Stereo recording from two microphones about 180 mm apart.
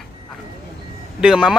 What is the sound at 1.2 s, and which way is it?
Speech, 5° right (ahead or behind).